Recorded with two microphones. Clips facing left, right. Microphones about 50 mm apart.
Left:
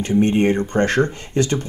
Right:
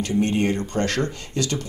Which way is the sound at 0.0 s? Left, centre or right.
Left.